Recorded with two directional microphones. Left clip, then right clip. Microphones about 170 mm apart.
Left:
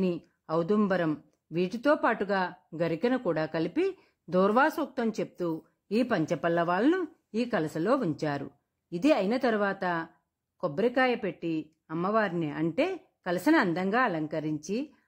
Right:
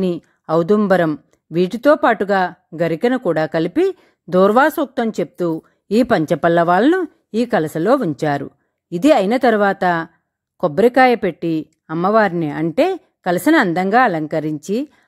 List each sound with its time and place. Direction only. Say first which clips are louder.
0.0 s speech: right 10 dB; 30° right (ahead or behind)